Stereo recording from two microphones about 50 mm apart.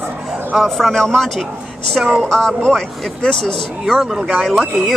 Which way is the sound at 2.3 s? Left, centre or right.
Centre.